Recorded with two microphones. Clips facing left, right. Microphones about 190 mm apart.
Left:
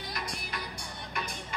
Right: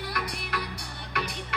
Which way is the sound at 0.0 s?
65° right (ahead or behind).